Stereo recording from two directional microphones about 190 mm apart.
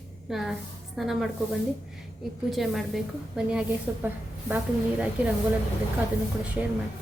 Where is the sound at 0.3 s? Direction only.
Centre (ahead or behind).